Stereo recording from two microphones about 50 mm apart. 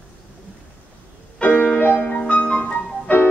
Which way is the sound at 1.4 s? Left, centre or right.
Left.